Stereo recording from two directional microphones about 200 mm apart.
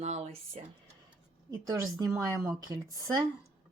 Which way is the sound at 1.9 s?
15° right (ahead or behind).